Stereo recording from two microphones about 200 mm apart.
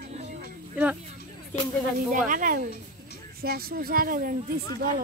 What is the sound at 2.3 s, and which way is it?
Speech, 40° right (ahead or behind).